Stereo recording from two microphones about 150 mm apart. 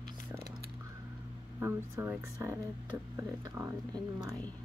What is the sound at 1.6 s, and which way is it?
Speech, 15° right (ahead or behind).